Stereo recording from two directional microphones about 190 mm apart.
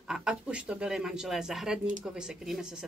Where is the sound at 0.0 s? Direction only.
5° right (ahead or behind).